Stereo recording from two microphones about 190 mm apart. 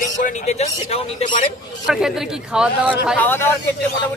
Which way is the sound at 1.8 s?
Centre (ahead or behind).